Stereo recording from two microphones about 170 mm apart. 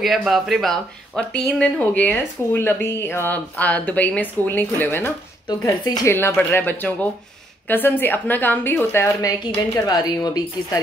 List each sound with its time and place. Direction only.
0.0 s speech: centre (ahead or behind)
5.5 s speech: 25° left (ahead or behind)